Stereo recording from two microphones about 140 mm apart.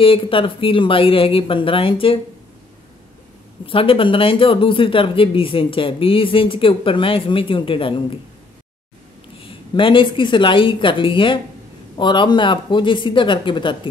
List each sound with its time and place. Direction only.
0.0 s speech: 40° left (ahead or behind)
3.6 s speech: 40° left (ahead or behind)
9.4 s speech: 40° left (ahead or behind)